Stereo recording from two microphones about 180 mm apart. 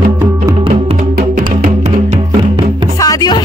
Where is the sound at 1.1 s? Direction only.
50° right (ahead or behind).